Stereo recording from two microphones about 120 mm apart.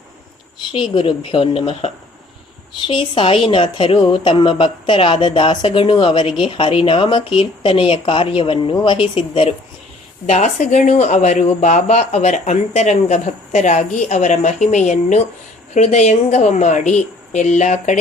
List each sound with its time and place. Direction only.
0.7 s a woman's voice: 50° left (ahead or behind)
10.2 s speech: 75° left (ahead or behind)